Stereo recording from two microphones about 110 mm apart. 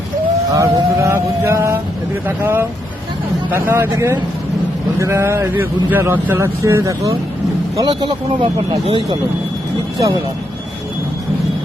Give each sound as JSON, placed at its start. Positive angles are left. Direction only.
{"t": 0.5, "sound": "speech", "side_deg": -30}
{"t": 7.8, "sound": "speech", "side_deg": -45}